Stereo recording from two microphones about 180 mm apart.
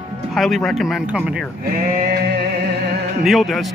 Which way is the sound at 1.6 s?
60° right (ahead or behind).